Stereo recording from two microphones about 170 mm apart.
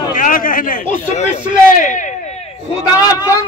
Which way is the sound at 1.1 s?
45° left (ahead or behind).